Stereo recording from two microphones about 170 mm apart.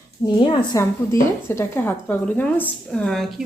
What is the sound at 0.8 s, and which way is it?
A woman's voice, 15° left (ahead or behind).